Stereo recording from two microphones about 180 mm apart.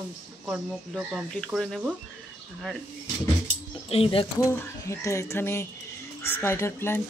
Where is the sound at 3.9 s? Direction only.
30° left (ahead or behind).